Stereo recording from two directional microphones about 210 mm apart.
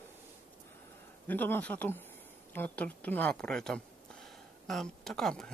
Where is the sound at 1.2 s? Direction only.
10° left (ahead or behind).